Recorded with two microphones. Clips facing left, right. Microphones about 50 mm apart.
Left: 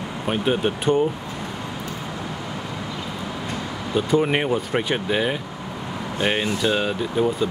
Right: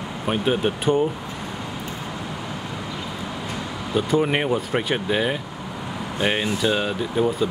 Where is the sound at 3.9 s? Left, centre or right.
Centre.